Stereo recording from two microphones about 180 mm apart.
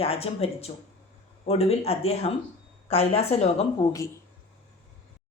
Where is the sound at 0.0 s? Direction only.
35° left (ahead or behind).